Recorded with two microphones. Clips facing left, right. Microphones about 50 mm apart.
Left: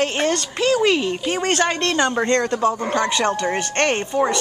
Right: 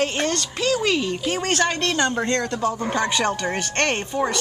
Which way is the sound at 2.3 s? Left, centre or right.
Left.